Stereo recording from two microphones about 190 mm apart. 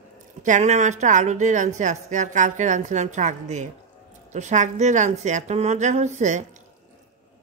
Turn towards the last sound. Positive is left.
turn(degrees=-40)  # may be behind; listen again after turning